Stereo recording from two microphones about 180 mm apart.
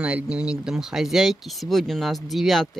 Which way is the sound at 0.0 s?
5° right (ahead or behind).